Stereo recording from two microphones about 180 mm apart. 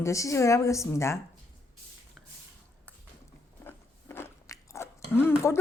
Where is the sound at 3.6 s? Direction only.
15° left (ahead or behind).